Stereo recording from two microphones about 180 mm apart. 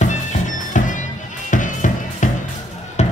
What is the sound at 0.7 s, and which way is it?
Music, 45° left (ahead or behind).